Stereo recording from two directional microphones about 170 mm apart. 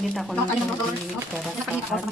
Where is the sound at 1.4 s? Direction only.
Centre (ahead or behind).